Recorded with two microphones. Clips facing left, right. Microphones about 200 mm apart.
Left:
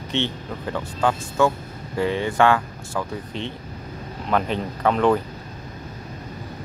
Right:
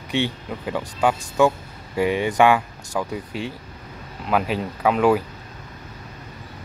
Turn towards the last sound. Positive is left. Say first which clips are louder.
# right 1 dB
turn(degrees=-5)  # may be behind; listen again after turning